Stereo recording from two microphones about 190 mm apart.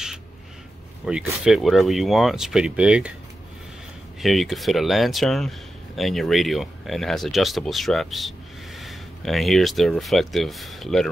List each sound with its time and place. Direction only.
1.0 s speech: 5° right (ahead or behind)
4.2 s speech: centre (ahead or behind)